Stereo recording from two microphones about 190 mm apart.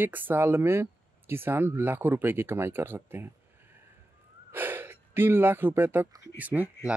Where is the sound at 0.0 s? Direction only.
10° right (ahead or behind).